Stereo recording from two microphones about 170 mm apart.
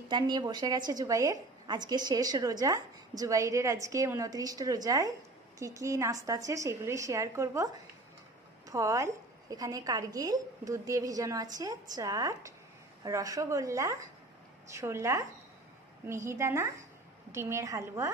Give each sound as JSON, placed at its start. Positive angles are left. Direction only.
{"t": 0.1, "sound": "a woman's voice", "side_deg": -25}